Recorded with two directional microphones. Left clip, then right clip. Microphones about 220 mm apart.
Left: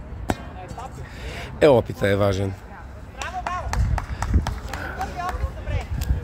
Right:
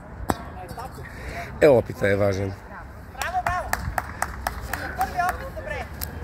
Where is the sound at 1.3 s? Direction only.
5° left (ahead or behind).